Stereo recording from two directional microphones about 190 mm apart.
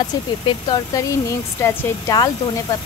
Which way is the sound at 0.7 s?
15° left (ahead or behind).